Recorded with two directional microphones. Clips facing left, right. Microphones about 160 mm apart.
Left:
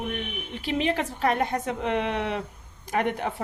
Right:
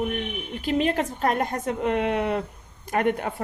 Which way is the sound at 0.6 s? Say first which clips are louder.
Right 3 dB; 45° right (ahead or behind).